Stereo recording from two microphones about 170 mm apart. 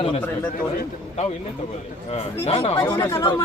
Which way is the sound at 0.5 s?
55° left (ahead or behind).